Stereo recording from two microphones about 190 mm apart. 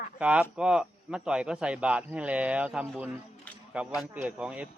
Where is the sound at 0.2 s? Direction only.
5° right (ahead or behind).